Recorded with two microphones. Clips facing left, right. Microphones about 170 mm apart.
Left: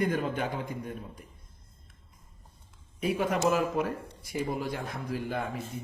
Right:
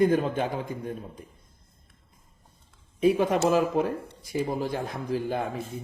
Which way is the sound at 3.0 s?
20° right (ahead or behind).